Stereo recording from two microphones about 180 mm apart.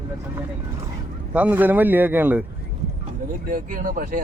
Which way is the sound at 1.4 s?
10° right (ahead or behind).